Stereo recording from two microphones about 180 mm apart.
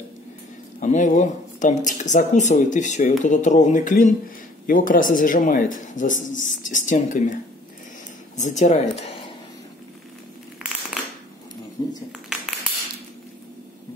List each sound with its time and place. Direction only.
0.7 s speech: 45° left (ahead or behind)
8.4 s speech: 40° left (ahead or behind)
10.6 s crushing: 5° right (ahead or behind)
11.8 s a sound: 25° left (ahead or behind)